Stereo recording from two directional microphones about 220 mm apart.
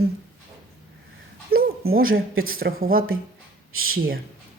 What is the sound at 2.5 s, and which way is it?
Speech, 40° right (ahead or behind).